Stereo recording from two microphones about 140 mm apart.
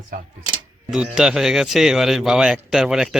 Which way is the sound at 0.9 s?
5° right (ahead or behind).